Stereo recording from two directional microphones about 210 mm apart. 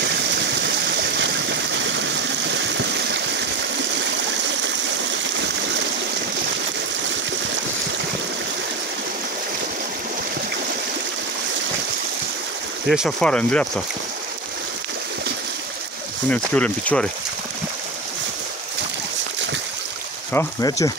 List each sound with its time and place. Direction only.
0.0 s stream: 55° right (ahead or behind)
12.8 s speech: centre (ahead or behind)
16.3 s speech: 5° left (ahead or behind)
20.3 s speech: 15° left (ahead or behind)